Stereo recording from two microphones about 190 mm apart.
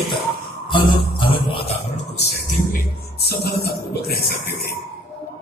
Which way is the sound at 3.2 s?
55° left (ahead or behind).